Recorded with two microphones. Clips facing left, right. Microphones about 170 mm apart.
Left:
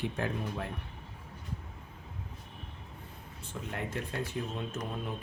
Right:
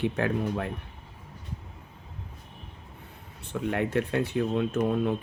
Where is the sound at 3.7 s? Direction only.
70° right (ahead or behind).